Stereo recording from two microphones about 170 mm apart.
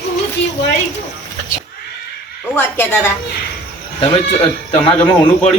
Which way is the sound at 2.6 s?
10° left (ahead or behind).